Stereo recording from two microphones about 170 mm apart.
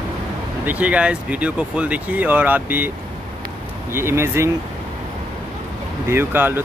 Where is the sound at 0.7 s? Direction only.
10° right (ahead or behind).